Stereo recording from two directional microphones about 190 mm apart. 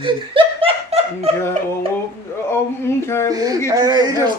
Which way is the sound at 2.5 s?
15° left (ahead or behind).